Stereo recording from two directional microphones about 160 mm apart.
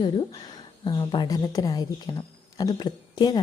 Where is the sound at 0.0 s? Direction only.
25° left (ahead or behind).